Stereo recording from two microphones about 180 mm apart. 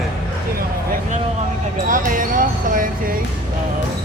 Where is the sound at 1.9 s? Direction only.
45° right (ahead or behind).